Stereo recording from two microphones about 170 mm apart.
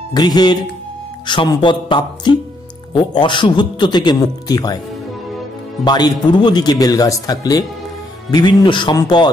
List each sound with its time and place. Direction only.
0.1 s a man's voice: 25° left (ahead or behind)
5.9 s a man's voice: 25° left (ahead or behind)